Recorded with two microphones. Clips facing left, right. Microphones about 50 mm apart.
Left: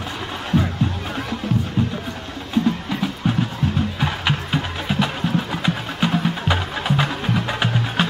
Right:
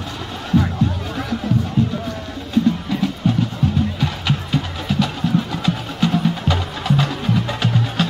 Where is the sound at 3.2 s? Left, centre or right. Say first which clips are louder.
Right 2 dB; centre.